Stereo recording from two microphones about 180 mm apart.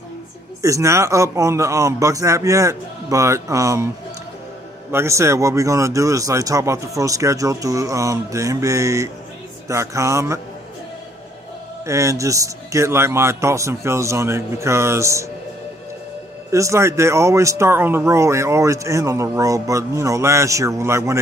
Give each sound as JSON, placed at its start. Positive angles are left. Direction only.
{"t": 0.6, "sound": "speech", "side_deg": -15}
{"t": 4.9, "sound": "speech", "side_deg": -15}
{"t": 11.8, "sound": "speech", "side_deg": -15}
{"t": 16.5, "sound": "speech", "side_deg": -15}